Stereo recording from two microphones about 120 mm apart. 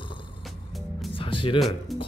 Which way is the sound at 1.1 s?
45° left (ahead or behind).